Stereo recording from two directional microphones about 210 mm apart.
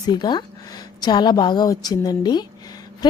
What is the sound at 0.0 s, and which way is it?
A woman's voice, 20° left (ahead or behind).